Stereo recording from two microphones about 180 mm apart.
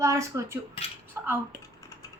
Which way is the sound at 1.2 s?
10° right (ahead or behind).